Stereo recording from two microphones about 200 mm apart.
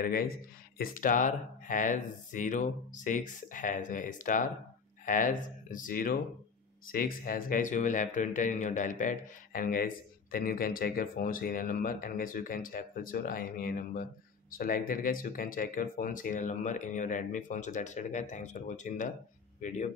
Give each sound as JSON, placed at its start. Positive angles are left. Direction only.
{"t": 0.0, "sound": "speech", "side_deg": 45}